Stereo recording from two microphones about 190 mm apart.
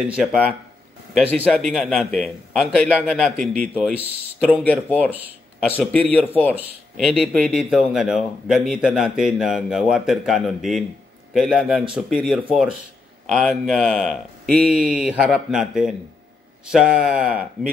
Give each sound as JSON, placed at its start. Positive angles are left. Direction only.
{"t": 0.0, "sound": "a man's voice", "side_deg": 0}
{"t": 4.9, "sound": "speech", "side_deg": -10}
{"t": 5.7, "sound": "a man's voice", "side_deg": 5}
{"t": 7.0, "sound": "a man's voice", "side_deg": 0}